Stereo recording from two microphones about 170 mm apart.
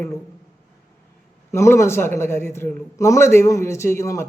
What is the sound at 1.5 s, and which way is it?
A man's voice, 15° left (ahead or behind).